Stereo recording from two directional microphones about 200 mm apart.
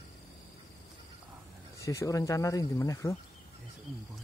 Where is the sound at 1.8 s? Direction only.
15° left (ahead or behind).